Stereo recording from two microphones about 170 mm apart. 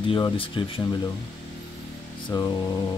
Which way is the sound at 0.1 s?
30° left (ahead or behind).